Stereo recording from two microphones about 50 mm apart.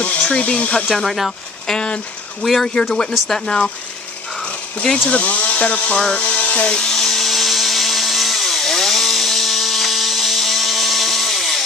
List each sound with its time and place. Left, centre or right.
0.0 s speech: left
0.8 s speech: centre
1.7 s a sound: centre
2.4 s speech: centre
5.1 s speech: left
6.7 s a sound: centre